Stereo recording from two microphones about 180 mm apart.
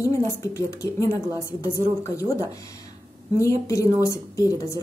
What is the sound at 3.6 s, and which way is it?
A woman's voice, 15° left (ahead or behind).